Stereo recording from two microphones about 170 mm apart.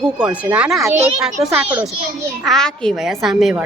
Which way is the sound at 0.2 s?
10° right (ahead or behind).